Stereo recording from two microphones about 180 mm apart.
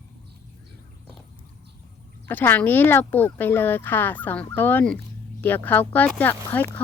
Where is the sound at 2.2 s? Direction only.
10° left (ahead or behind).